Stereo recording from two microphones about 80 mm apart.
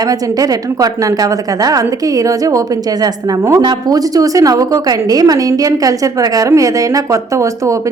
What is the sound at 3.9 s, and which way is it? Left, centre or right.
A woman's voice, right.